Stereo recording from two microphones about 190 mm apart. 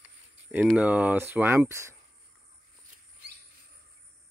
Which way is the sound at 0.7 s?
5° right (ahead or behind).